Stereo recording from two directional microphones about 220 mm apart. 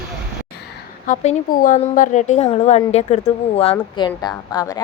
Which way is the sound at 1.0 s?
35° left (ahead or behind).